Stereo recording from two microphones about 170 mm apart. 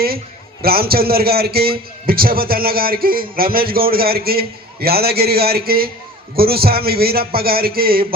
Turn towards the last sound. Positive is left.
turn(degrees=-60)  # may be behind; listen again after turning